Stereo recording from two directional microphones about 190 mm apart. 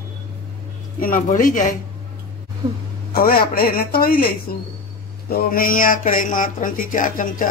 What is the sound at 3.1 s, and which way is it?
Speech, 50° left (ahead or behind).